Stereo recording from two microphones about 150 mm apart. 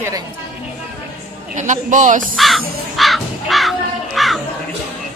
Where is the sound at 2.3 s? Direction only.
Centre (ahead or behind).